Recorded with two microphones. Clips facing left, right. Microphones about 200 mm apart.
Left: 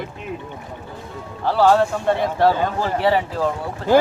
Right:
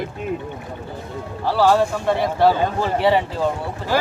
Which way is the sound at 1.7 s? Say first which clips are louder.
Left 1 dB; 10° right (ahead or behind).